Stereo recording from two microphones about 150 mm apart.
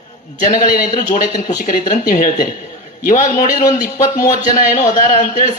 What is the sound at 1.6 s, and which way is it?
A man's voice, 70° left (ahead or behind).